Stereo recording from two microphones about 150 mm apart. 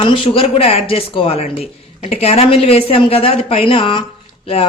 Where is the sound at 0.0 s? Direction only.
35° left (ahead or behind).